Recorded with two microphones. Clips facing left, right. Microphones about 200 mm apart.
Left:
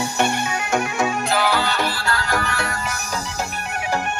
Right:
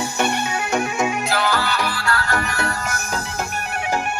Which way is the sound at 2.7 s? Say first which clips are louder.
Right 1 dB; 50° right (ahead or behind).